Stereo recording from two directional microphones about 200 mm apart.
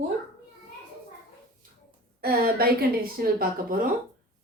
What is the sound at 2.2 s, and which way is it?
Speech, 50° right (ahead or behind).